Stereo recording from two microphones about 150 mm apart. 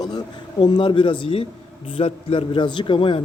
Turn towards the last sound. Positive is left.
turn(degrees=35)  # may be behind; listen again after turning